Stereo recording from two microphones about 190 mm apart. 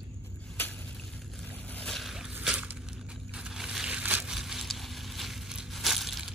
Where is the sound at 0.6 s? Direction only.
10° left (ahead or behind).